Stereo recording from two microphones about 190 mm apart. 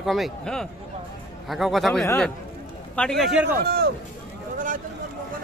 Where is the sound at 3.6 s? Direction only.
60° right (ahead or behind).